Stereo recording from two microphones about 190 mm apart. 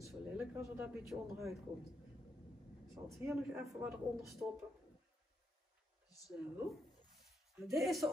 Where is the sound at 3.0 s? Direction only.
5° right (ahead or behind).